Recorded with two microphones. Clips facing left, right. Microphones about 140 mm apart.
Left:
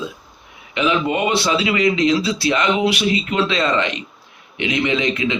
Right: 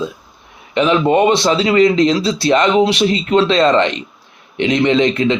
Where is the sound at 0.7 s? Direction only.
40° right (ahead or behind).